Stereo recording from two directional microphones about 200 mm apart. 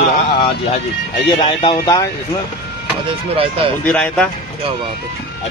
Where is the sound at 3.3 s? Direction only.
30° right (ahead or behind).